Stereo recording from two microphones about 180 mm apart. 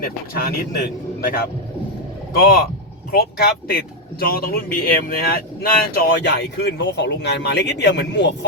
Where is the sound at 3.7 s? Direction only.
55° left (ahead or behind).